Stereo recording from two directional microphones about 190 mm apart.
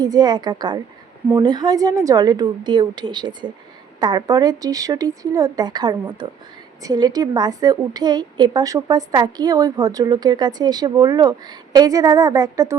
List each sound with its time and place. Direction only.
0.0 s a woman's voice: 20° right (ahead or behind)